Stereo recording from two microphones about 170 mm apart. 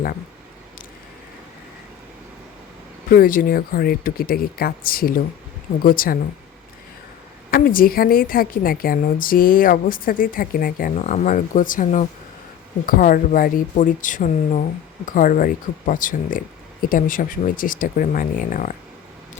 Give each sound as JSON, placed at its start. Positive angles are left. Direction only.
{"t": 3.1, "sound": "a woman's voice", "side_deg": 55}
{"t": 7.5, "sound": "a woman's voice", "side_deg": 55}